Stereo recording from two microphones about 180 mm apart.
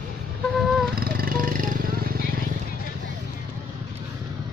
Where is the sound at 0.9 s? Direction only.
55° right (ahead or behind).